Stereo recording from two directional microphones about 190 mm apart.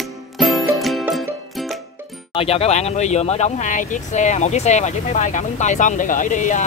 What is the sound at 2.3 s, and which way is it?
Speech, 30° left (ahead or behind).